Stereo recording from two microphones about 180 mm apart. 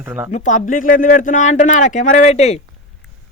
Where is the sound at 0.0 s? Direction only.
10° right (ahead or behind).